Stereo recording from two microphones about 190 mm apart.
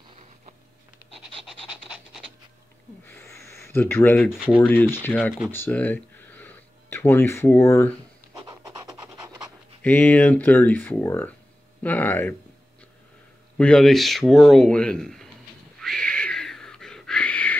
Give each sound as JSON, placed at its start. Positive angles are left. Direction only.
{"t": 1.4, "sound": "rub", "side_deg": -5}
{"t": 3.1, "sound": "a sound", "side_deg": 10}
{"t": 4.6, "sound": "speech", "side_deg": 10}
{"t": 8.4, "sound": "pant", "side_deg": -20}
{"t": 9.8, "sound": "speech", "side_deg": 10}
{"t": 13.6, "sound": "speech", "side_deg": 5}
{"t": 15.8, "sound": "a sound", "side_deg": 5}